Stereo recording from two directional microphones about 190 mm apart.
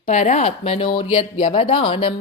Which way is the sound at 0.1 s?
35° left (ahead or behind).